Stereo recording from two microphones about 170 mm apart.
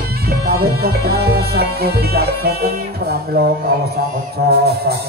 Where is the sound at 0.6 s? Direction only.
65° right (ahead or behind).